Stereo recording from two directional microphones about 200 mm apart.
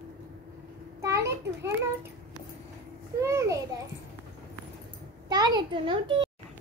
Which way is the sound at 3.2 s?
15° right (ahead or behind).